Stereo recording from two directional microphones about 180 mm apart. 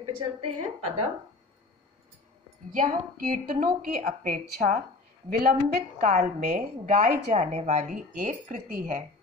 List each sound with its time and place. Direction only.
0.4 s a woman's voice: 35° right (ahead or behind)
2.7 s a woman's voice: 50° right (ahead or behind)
7.2 s a woman's voice: 40° right (ahead or behind)